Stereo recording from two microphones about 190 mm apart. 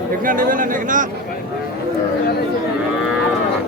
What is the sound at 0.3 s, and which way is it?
Speech, 45° right (ahead or behind).